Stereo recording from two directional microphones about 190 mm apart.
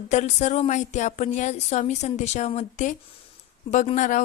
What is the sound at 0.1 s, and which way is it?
A woman's voice, 40° left (ahead or behind).